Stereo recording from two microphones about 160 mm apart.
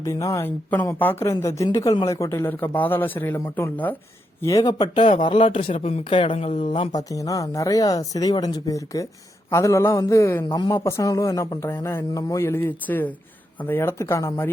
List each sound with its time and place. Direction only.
0.0 s speech: 20° left (ahead or behind)
4.4 s speech: 20° left (ahead or behind); by 6.7 s 45° left (ahead or behind)
6.7 s a man's voice: 20° left (ahead or behind)